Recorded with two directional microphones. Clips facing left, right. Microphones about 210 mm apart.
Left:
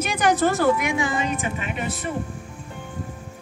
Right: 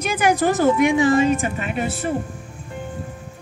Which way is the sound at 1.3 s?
45° right (ahead or behind).